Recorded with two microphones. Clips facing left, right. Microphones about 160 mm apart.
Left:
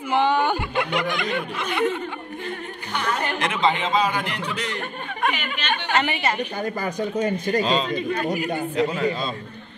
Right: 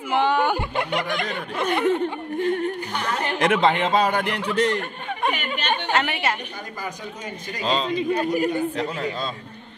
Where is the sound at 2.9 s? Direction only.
40° right (ahead or behind).